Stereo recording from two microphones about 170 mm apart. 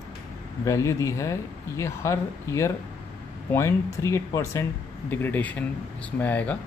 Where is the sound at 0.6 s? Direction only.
15° left (ahead or behind).